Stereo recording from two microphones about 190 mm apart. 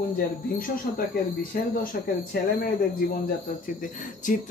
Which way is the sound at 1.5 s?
50° left (ahead or behind).